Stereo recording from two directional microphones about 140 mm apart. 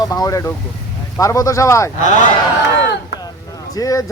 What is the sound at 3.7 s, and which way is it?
Speech, 25° left (ahead or behind).